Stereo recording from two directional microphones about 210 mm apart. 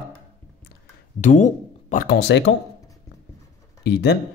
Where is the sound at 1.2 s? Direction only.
35° left (ahead or behind).